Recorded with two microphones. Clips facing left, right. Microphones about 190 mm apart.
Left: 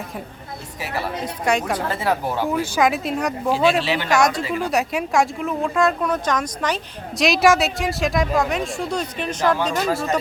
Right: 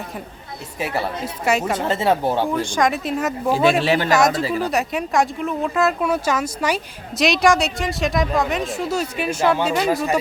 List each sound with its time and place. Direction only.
1.2 s speech: 5° right (ahead or behind)
1.9 s speech: 25° right (ahead or behind)
2.5 s speech: 5° left (ahead or behind)
3.8 s speech: 45° right (ahead or behind)
4.1 s speech: centre (ahead or behind)